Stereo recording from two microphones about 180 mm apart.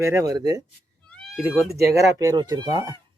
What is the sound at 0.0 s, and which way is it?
Speech, 15° right (ahead or behind).